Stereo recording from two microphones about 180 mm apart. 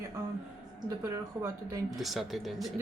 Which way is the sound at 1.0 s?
15° right (ahead or behind).